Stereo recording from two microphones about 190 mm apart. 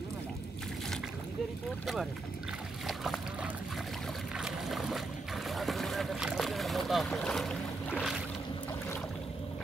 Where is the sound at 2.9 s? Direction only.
Centre (ahead or behind).